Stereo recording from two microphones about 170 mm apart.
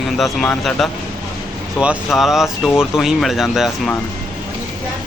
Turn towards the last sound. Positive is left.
turn(degrees=0)  # may be behind; listen again after turning